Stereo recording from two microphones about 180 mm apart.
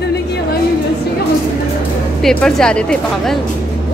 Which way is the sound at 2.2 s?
5° left (ahead or behind).